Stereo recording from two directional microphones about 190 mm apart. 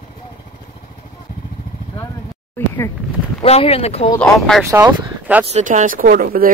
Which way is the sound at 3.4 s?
30° left (ahead or behind).